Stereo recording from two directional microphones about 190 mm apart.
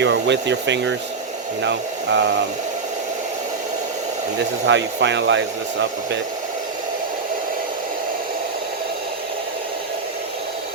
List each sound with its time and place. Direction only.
0.0 s speech: 70° right (ahead or behind)
4.6 s speech: 70° right (ahead or behind)